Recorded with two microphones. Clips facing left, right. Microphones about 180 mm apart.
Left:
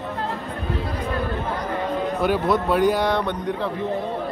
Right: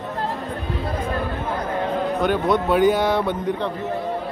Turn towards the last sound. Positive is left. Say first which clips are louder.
# right 2 dB
turn(degrees=0)  # may be behind; listen again after turning